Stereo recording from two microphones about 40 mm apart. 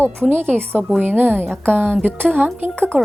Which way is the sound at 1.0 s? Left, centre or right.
Right.